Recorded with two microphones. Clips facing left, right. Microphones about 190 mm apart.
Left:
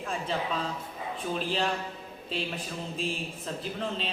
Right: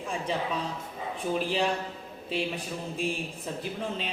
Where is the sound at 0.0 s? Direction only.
15° right (ahead or behind).